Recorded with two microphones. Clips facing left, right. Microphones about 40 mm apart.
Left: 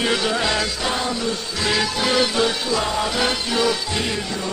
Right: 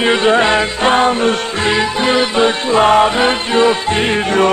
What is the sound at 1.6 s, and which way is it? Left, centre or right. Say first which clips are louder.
Music: right 6 dB; right.